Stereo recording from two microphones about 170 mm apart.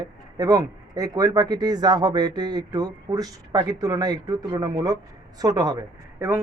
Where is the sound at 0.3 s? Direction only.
20° right (ahead or behind).